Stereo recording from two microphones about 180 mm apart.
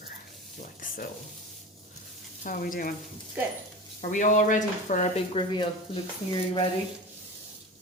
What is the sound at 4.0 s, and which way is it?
Speech, 45° left (ahead or behind).